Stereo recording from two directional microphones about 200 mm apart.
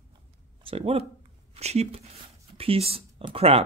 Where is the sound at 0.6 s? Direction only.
30° right (ahead or behind).